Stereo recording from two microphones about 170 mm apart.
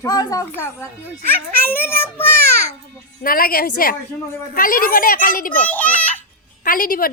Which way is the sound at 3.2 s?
60° left (ahead or behind).